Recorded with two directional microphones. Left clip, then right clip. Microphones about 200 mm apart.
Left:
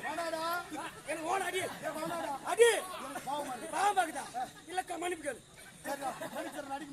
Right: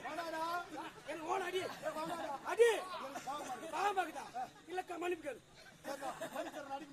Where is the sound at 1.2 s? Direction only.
5° right (ahead or behind).